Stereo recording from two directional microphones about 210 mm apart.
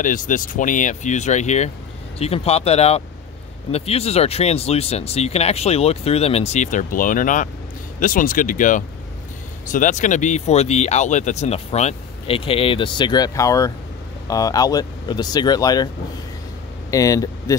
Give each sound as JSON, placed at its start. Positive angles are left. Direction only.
{"t": 0.0, "sound": "speech", "side_deg": 40}
{"t": 16.9, "sound": "speech", "side_deg": 15}